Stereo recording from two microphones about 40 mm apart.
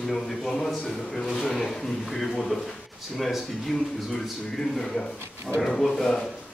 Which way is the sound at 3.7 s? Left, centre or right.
Centre.